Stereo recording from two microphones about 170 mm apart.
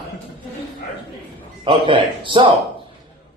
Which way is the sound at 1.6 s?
30° right (ahead or behind).